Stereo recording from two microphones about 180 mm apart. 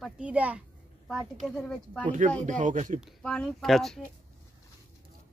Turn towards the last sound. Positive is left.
turn(degrees=0)  # may be behind; listen again after turning